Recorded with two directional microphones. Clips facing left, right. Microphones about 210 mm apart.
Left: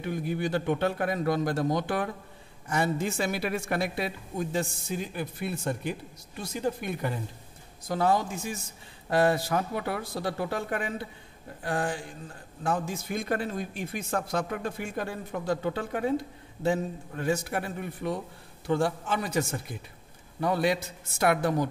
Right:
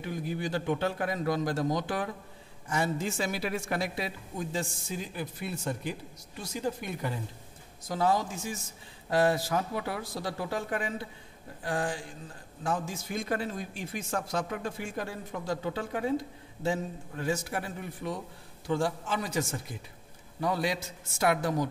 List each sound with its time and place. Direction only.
0.0 s speech: 60° left (ahead or behind)